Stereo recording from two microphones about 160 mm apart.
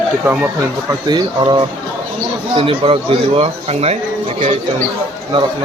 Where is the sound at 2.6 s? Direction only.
35° right (ahead or behind).